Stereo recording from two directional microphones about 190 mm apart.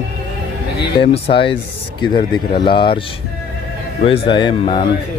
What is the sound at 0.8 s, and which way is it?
Speech, 30° left (ahead or behind).